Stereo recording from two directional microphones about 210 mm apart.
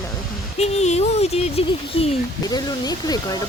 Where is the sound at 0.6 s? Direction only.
30° left (ahead or behind).